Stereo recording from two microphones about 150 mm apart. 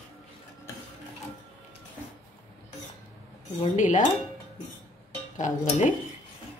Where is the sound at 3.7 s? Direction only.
55° left (ahead or behind).